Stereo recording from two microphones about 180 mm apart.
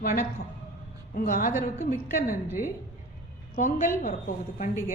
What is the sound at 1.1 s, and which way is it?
A woman's voice, 50° left (ahead or behind).